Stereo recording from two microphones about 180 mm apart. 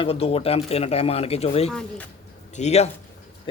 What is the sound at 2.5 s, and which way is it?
Speech, 40° left (ahead or behind).